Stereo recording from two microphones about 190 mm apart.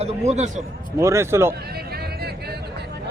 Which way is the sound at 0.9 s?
15° right (ahead or behind).